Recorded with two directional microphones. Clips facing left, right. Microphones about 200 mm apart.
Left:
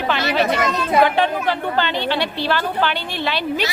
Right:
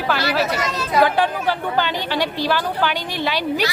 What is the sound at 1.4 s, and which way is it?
A woman's voice, 10° right (ahead or behind).